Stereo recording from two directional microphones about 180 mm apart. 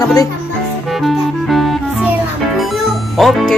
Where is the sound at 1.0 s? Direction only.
Centre (ahead or behind).